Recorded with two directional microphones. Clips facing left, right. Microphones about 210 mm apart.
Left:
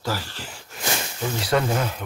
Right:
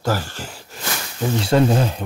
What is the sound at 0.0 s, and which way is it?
Speech, 50° right (ahead or behind).